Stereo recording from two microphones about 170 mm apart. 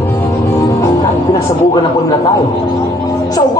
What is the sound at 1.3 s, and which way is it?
Speech, 25° left (ahead or behind).